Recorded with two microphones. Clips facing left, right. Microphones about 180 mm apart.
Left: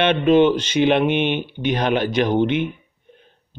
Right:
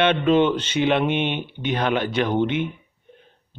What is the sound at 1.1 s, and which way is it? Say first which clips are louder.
Speech: left 3 dB; 80° left.